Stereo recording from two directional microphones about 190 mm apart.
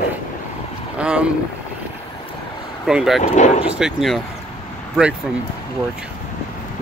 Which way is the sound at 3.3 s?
40° left (ahead or behind).